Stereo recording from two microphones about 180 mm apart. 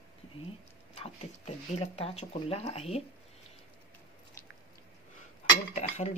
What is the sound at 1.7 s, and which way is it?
Speech, 35° left (ahead or behind).